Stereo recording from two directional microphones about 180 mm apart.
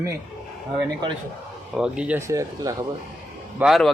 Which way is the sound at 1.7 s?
5° right (ahead or behind).